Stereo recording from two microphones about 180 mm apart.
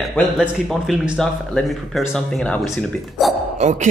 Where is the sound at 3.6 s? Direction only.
40° right (ahead or behind).